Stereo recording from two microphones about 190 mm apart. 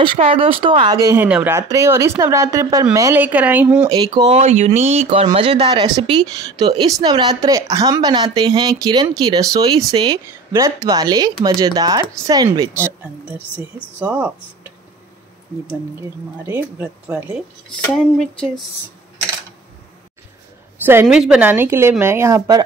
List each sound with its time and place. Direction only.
0.0 s speech: 25° right (ahead or behind); by 3.8 s 10° right (ahead or behind)
3.8 s speech: 25° right (ahead or behind)
4.4 s speech: 35° right (ahead or behind); by 14.7 s 10° right (ahead or behind)
16.4 s speech: 10° right (ahead or behind)
17.9 s speech: 5° left (ahead or behind)
20.8 s speech: 10° right (ahead or behind)